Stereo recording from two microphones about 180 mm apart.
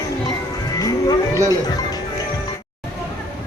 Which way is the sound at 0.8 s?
20° left (ahead or behind).